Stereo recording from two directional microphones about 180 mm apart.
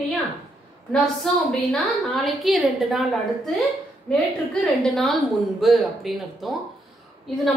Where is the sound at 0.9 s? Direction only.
Centre (ahead or behind).